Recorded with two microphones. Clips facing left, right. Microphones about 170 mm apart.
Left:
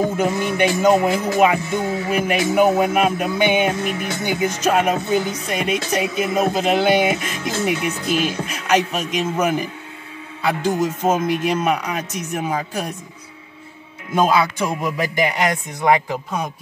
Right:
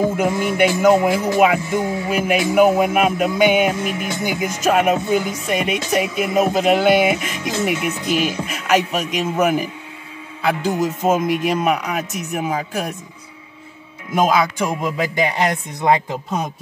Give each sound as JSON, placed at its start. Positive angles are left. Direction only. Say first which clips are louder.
{"t": 0.2, "sound": "speech", "louder": "right 1 dB", "side_deg": -10}
{"t": 4.6, "sound": "speech", "louder": "right 3 dB", "side_deg": -5}
{"t": 11.2, "sound": "speech", "louder": "right 1 dB", "side_deg": -5}
{"t": 14.1, "sound": "a man's voice", "louder": "even", "side_deg": -15}